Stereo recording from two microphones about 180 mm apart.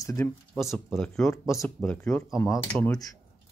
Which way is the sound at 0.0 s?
20° left (ahead or behind).